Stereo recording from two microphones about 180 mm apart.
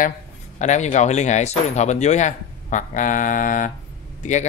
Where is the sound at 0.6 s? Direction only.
40° left (ahead or behind).